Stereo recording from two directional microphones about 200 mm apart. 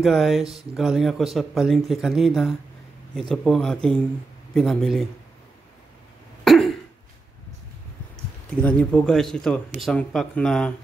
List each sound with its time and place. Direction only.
0.0 s speech: centre (ahead or behind)
6.4 s cough: centre (ahead or behind)
8.5 s speech: 5° left (ahead or behind)